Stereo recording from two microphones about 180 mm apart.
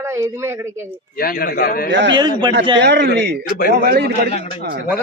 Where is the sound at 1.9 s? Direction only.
85° right.